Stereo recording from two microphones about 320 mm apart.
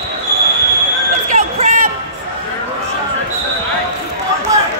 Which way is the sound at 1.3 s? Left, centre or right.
Right.